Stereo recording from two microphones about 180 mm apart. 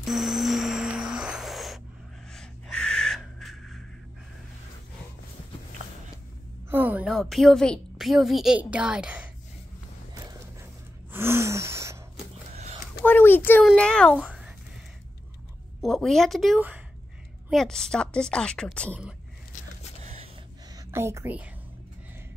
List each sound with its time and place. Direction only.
0.0 s music: centre (ahead or behind)
2.3 s owl: 5° left (ahead or behind)
6.7 s a woman's voice: 10° right (ahead or behind)
10.1 s gasp: 15° right (ahead or behind)
13.0 s a sound: 10° left (ahead or behind); by 14.5 s 5° right (ahead or behind)
15.8 s a woman's voice: centre (ahead or behind)
17.5 s a woman's voice: centre (ahead or behind)
20.0 s gasp: 35° right (ahead or behind)
20.7 s a woman's voice: 15° right (ahead or behind)